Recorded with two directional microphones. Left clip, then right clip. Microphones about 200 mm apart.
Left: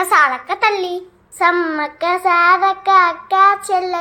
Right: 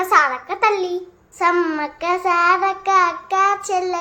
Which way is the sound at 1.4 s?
5° left (ahead or behind).